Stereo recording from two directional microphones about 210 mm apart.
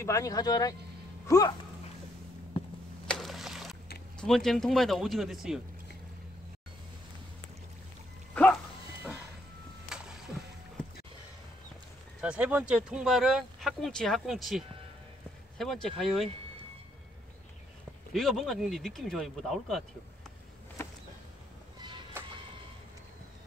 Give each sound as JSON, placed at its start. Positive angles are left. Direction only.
{"t": 0.0, "sound": "speech", "side_deg": 15}
{"t": 3.1, "sound": "a sound", "side_deg": 0}
{"t": 4.2, "sound": "speech", "side_deg": 0}
{"t": 9.8, "sound": "a sound", "side_deg": -5}
{"t": 12.2, "sound": "speech", "side_deg": -5}
{"t": 18.1, "sound": "speech", "side_deg": 0}
{"t": 22.2, "sound": "vehicle", "side_deg": -10}